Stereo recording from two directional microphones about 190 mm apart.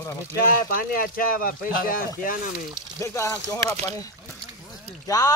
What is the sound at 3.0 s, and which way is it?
Speech, 15° left (ahead or behind).